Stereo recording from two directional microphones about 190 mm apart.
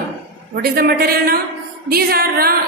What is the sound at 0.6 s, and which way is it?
A woman's voice, 50° right (ahead or behind).